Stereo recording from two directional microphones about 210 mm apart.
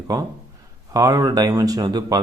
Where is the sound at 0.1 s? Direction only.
15° right (ahead or behind).